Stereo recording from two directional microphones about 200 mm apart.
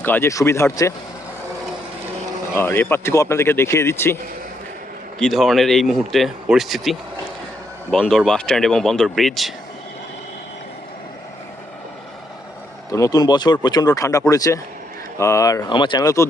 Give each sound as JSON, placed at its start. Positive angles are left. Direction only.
{"t": 0.0, "sound": "speech", "side_deg": 10}
{"t": 2.6, "sound": "speech", "side_deg": 10}
{"t": 5.2, "sound": "speech", "side_deg": 0}
{"t": 12.9, "sound": "speech", "side_deg": 20}